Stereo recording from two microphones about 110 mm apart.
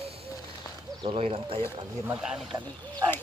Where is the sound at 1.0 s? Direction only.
60° right (ahead or behind).